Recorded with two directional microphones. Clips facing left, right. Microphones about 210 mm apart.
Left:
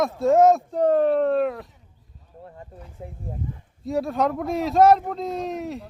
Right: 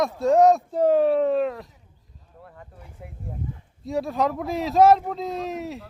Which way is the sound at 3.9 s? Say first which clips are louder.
Left 1 dB; centre (ahead or behind).